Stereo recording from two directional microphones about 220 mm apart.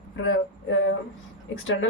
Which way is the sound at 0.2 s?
65° left (ahead or behind).